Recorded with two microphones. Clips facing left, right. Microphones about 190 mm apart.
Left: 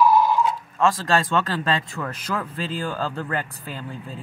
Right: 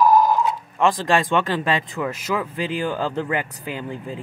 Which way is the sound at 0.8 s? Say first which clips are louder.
Right 2 dB; 15° right (ahead or behind).